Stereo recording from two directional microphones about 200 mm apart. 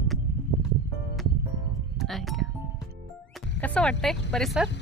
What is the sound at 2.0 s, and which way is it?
Music, centre (ahead or behind).